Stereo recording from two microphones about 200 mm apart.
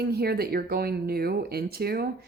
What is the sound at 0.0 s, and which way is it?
Speech, 50° right (ahead or behind).